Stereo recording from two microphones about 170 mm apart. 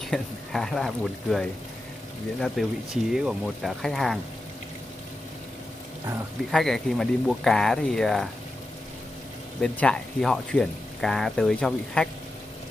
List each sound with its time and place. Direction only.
0.1 s speech: centre (ahead or behind)
6.5 s speech: centre (ahead or behind)
9.6 s speech: 5° left (ahead or behind)